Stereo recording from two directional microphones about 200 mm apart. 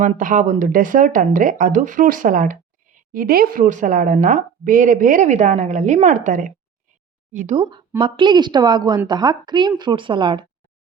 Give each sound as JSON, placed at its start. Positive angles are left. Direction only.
{"t": 0.0, "sound": "speech", "side_deg": -40}
{"t": 7.6, "sound": "speech", "side_deg": -25}